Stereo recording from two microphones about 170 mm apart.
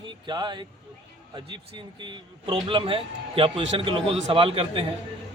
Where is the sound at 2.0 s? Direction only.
30° right (ahead or behind).